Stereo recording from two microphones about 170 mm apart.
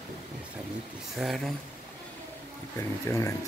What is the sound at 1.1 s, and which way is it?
Speech, centre (ahead or behind).